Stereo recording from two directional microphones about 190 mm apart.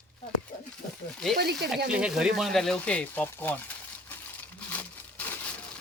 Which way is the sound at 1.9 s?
5° right (ahead or behind).